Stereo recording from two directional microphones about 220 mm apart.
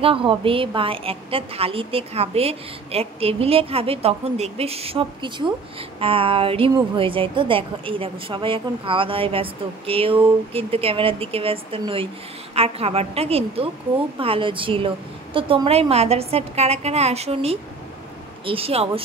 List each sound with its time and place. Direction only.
0.0 s a woman's voice: 25° right (ahead or behind)